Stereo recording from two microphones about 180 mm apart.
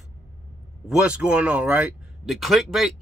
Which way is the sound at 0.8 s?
5° right (ahead or behind).